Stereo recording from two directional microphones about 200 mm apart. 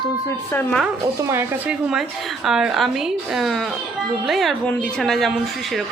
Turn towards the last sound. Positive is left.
turn(degrees=0)  # may be behind; listen again after turning